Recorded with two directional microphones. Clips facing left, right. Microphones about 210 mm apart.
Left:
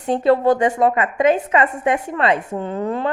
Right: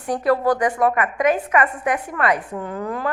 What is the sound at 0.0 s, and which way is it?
A woman's voice, 25° left (ahead or behind).